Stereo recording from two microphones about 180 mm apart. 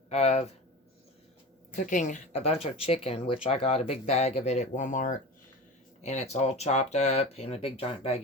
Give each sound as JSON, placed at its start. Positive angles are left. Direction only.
{"t": 0.1, "sound": "speech", "side_deg": 35}
{"t": 1.7, "sound": "speech", "side_deg": 45}